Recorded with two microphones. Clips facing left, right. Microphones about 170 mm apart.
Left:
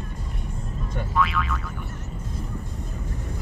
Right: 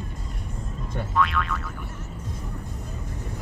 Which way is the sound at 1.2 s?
Centre (ahead or behind).